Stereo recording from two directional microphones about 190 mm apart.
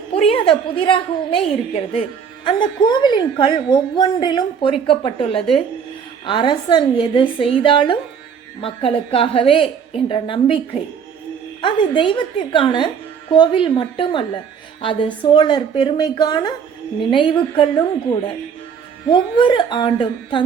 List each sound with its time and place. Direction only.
0.3 s a woman's voice: 25° left (ahead or behind)
11.6 s a woman's voice: 25° left (ahead or behind)
19.0 s a woman's voice: 25° left (ahead or behind)